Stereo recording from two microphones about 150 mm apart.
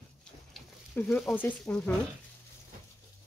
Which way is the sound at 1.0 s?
10° left (ahead or behind).